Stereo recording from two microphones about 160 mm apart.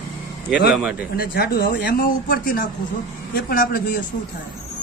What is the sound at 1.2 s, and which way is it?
Speech, 75° left (ahead or behind).